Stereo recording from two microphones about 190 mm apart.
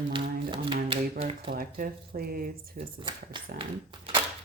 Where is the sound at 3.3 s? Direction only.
25° right (ahead or behind).